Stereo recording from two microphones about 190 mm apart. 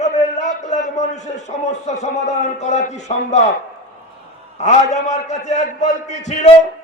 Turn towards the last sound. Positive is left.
turn(degrees=35)  # may be behind; listen again after turning